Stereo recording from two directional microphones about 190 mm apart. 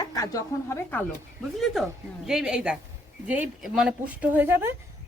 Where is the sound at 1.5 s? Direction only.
Centre (ahead or behind).